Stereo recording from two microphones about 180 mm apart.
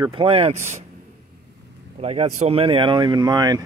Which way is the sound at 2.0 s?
35° right (ahead or behind).